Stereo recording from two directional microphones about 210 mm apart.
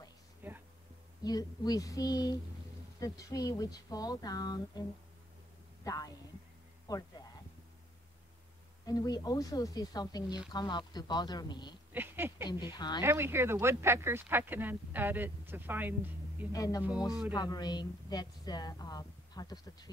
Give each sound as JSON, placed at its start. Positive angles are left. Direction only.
{"t": 0.4, "sound": "a sound", "side_deg": -10}
{"t": 1.2, "sound": "speech", "side_deg": 20}
{"t": 5.9, "sound": "speech", "side_deg": 15}
{"t": 8.8, "sound": "a woman's voice", "side_deg": 15}
{"t": 11.9, "sound": "a sound", "side_deg": -10}
{"t": 12.7, "sound": "a woman's voice", "side_deg": 20}
{"t": 13.0, "sound": "speech", "side_deg": -10}
{"t": 16.5, "sound": "a woman's voice", "side_deg": 15}